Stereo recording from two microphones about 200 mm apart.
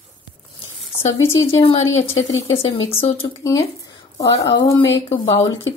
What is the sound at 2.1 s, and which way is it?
Speech, 70° left (ahead or behind).